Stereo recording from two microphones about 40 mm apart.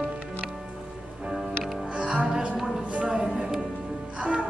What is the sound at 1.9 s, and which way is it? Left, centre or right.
Music, right.